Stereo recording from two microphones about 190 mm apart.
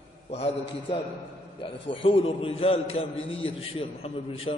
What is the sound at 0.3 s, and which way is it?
A man's voice, 35° left (ahead or behind).